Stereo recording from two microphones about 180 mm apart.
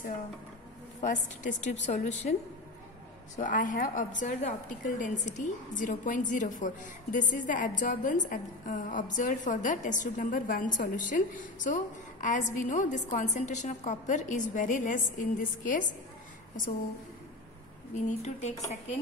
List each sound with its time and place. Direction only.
1.0 s a woman's voice: 45° left (ahead or behind)
3.3 s a woman's voice: 45° left (ahead or behind)
17.9 s a woman's voice: 40° left (ahead or behind)